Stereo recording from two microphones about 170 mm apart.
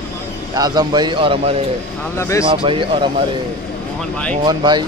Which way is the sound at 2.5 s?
30° right (ahead or behind).